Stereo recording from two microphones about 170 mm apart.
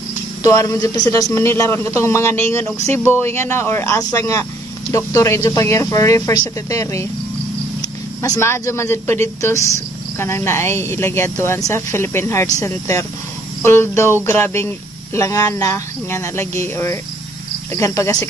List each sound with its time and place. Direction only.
0.4 s speech: 20° left (ahead or behind)
8.2 s speech: 15° left (ahead or behind)